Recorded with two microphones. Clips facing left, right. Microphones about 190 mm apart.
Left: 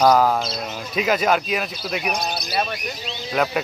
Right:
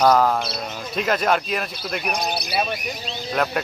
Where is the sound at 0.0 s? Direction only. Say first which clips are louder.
Left 1 dB; 5° left (ahead or behind).